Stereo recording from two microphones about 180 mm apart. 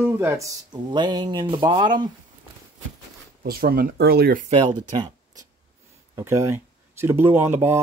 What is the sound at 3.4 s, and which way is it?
Speech, 55° right (ahead or behind).